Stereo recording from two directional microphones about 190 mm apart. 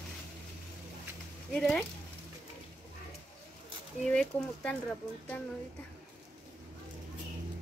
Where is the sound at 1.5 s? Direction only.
5° left (ahead or behind).